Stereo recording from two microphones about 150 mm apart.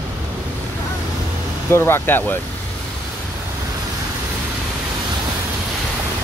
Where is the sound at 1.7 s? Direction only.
15° left (ahead or behind).